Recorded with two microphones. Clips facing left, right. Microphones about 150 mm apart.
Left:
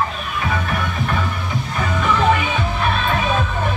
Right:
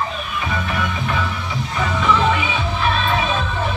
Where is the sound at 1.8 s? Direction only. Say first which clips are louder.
Right 1 dB; 50° left (ahead or behind).